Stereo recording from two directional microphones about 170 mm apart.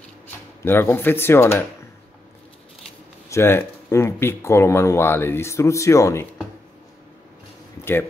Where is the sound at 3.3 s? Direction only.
15° left (ahead or behind).